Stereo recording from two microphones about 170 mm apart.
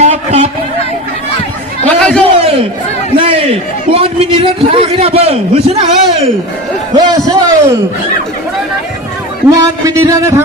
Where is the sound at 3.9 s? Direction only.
35° right (ahead or behind).